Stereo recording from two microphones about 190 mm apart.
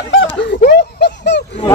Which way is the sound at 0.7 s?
60° left (ahead or behind).